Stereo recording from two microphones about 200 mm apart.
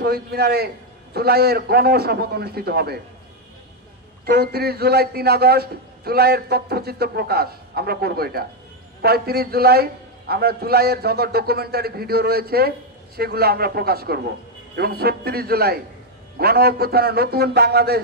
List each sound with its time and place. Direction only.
0.0 s a man's voice: 50° right (ahead or behind)
4.3 s a man's voice: 50° right (ahead or behind)